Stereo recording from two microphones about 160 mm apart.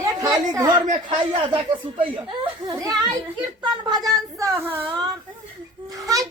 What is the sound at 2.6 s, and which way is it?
Speech, 25° right (ahead or behind).